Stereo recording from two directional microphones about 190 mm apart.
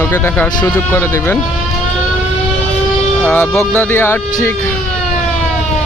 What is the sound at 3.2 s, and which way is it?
Speech, 10° left (ahead or behind).